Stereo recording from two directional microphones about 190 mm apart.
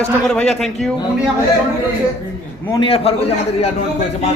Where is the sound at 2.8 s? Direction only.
30° left (ahead or behind).